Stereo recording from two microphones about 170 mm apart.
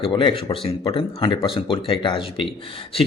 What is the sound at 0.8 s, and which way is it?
Speech, 20° left (ahead or behind).